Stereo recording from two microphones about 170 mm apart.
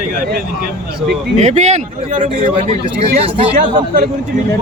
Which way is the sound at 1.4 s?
40° right (ahead or behind).